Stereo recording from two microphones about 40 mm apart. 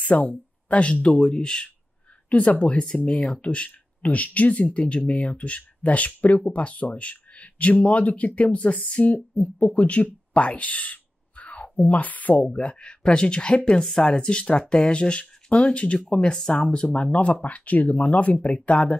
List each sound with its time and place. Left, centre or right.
0.1 s speech: left
2.2 s speech: left
9.8 s a sound: left
11.6 s speech: left
12.4 s speech: left